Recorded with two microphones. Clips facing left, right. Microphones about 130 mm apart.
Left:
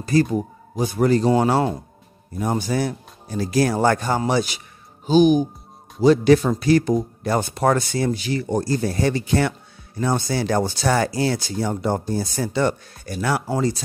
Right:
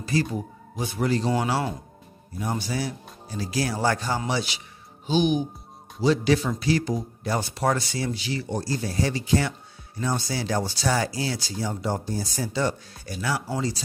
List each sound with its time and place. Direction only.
0.0 s speech: 45° left (ahead or behind)